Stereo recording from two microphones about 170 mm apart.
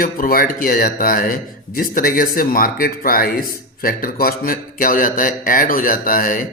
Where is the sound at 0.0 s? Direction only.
60° left (ahead or behind).